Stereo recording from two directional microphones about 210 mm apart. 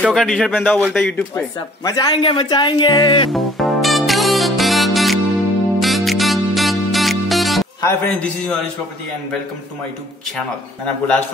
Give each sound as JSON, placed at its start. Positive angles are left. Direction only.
{"t": 0.0, "sound": "speech", "side_deg": 0}
{"t": 1.9, "sound": "a woman's voice", "side_deg": 20}
{"t": 3.3, "sound": "music", "side_deg": 0}
{"t": 7.8, "sound": "a man's voice", "side_deg": 10}